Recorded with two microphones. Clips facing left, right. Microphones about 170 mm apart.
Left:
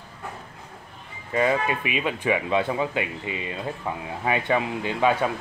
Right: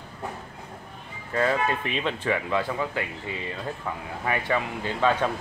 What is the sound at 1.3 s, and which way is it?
Speech, 15° left (ahead or behind).